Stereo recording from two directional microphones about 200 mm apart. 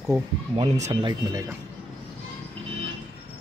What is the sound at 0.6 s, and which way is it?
Speech, 35° right (ahead or behind).